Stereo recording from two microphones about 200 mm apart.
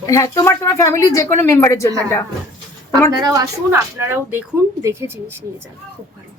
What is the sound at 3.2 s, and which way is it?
A woman's voice, 20° right (ahead or behind).